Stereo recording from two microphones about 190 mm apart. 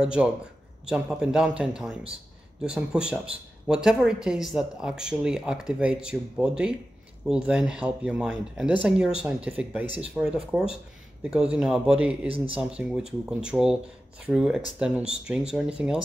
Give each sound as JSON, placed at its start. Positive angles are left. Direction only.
{"t": 0.0, "sound": "speech", "side_deg": -5}